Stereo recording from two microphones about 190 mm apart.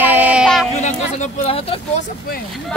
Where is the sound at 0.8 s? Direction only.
40° left (ahead or behind).